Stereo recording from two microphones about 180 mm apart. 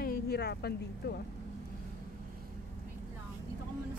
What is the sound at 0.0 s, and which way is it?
Speech, 60° left (ahead or behind).